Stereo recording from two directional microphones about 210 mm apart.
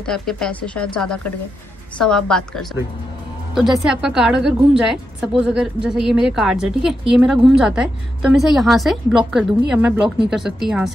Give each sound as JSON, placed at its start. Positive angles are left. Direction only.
{"t": 0.0, "sound": "a woman's voice", "side_deg": 0}